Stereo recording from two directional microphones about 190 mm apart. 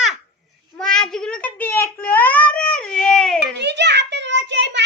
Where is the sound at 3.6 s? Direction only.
65° right (ahead or behind).